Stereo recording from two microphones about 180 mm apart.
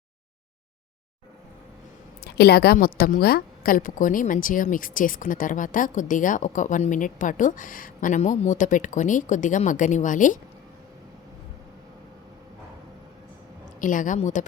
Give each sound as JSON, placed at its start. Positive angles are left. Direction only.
{"t": 2.2, "sound": "a woman's voice", "side_deg": 60}
{"t": 13.8, "sound": "a woman's voice", "side_deg": 45}